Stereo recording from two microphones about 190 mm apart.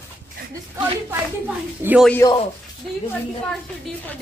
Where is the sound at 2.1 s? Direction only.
15° left (ahead or behind).